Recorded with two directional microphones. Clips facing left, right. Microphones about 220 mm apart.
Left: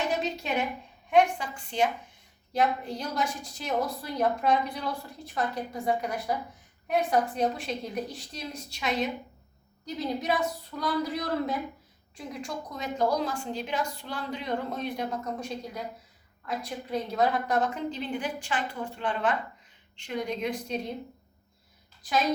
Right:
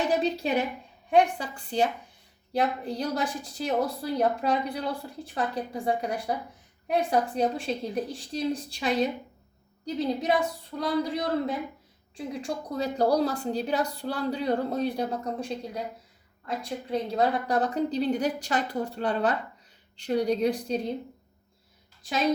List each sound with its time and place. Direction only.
0.2 s a sound: 35° right (ahead or behind)
1.1 s a woman's voice: 35° right (ahead or behind)
12.1 s a woman's voice: 30° right (ahead or behind)